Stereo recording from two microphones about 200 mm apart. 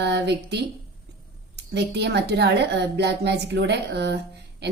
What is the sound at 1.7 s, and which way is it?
A woman's voice, 55° right (ahead or behind).